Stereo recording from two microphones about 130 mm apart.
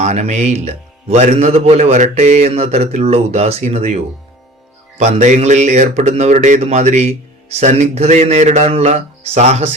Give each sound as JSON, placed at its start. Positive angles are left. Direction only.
{"t": 0.0, "sound": "a man's voice", "side_deg": -60}